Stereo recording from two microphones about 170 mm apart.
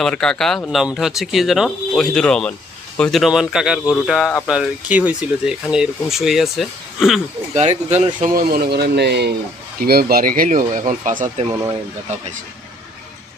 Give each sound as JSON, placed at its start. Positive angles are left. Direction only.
{"t": 0.0, "sound": "speech", "side_deg": 5}
{"t": 7.5, "sound": "speech", "side_deg": -40}
{"t": 8.4, "sound": "speech", "side_deg": -60}
{"t": 9.8, "sound": "speech", "side_deg": -65}
{"t": 11.5, "sound": "speech", "side_deg": -20}